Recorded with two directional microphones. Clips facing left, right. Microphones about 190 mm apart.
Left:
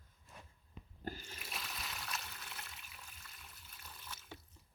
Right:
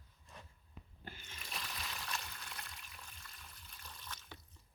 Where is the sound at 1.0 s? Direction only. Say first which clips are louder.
Left 9 dB; 40° left (ahead or behind).